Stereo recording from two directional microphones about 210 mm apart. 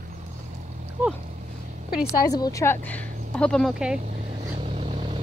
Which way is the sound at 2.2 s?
15° left (ahead or behind).